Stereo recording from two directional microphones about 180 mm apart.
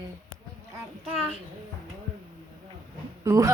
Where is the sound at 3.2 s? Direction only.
15° right (ahead or behind).